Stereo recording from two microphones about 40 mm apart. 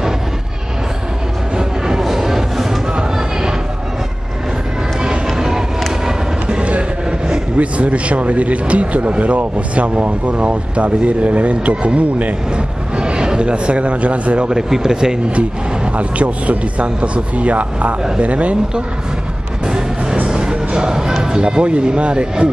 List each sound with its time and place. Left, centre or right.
1.6 s music: centre
5.0 s vehicle: centre
6.5 s vehicle: right
7.5 s speech: right
12.9 s speech: right
14.5 s speech: centre
15.3 s speech: right
19.6 s music: centre
21.2 s speech: centre